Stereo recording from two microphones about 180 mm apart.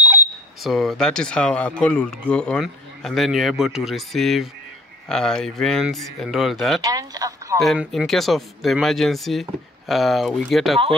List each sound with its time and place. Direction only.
0.0 s smoke detector: 10° right (ahead or behind)
0.6 s speech: centre (ahead or behind)
6.8 s speech: 20° right (ahead or behind)
7.5 s speech: centre (ahead or behind)